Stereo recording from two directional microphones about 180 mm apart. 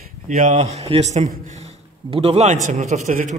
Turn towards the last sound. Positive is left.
turn(degrees=-45)  # may be behind; listen again after turning